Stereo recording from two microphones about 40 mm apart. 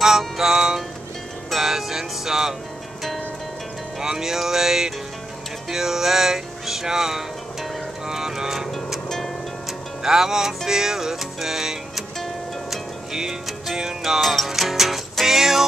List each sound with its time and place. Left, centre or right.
0.4 s music: centre
4.0 s music: centre
10.0 s music: centre
13.1 s music: centre
14.2 s music: centre